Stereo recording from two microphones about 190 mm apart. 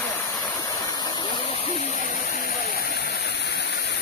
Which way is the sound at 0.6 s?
20° left (ahead or behind).